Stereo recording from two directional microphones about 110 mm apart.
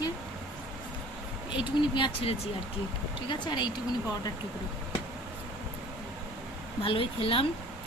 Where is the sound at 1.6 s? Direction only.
45° left (ahead or behind).